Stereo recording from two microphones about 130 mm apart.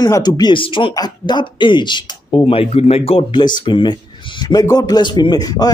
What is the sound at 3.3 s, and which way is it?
Speech, 35° left (ahead or behind).